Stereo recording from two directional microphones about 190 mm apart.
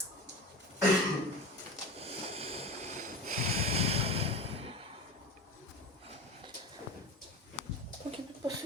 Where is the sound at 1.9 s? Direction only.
30° right (ahead or behind).